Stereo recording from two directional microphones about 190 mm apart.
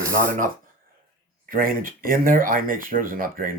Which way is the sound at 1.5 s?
50° right (ahead or behind).